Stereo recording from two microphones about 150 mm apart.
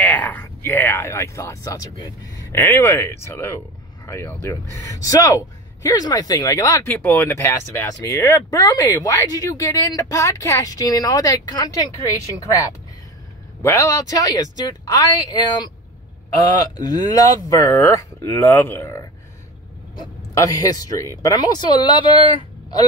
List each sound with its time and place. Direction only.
0.0 s speech: 10° left (ahead or behind)
13.6 s speech: 20° left (ahead or behind)
16.7 s speech: 25° left (ahead or behind)